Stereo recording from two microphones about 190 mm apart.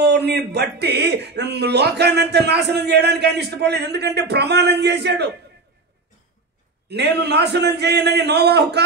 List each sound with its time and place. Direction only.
0.0 s a man's voice: 60° right (ahead or behind)
6.9 s a man's voice: 60° right (ahead or behind)